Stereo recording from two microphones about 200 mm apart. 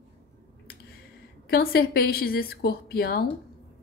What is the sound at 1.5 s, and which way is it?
A woman's voice, 50° left (ahead or behind).